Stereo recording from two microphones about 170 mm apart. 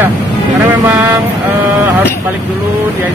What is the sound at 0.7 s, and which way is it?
Vehicle, 10° right (ahead or behind).